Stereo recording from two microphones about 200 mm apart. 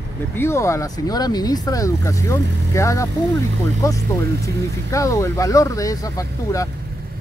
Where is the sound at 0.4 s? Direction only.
15° left (ahead or behind).